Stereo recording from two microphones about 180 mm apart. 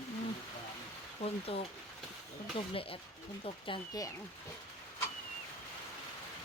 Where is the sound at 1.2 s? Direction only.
35° left (ahead or behind).